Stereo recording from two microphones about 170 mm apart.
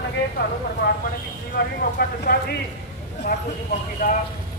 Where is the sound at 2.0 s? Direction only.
65° left (ahead or behind).